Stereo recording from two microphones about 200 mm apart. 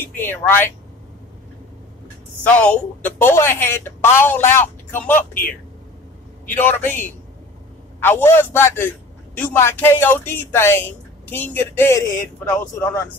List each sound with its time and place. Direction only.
0.0 s a woman's voice: 10° left (ahead or behind)
2.4 s a woman's voice: 5° left (ahead or behind)
6.5 s a woman's voice: 10° left (ahead or behind)